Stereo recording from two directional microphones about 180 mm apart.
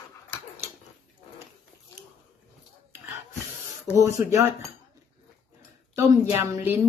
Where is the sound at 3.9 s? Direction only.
15° right (ahead or behind).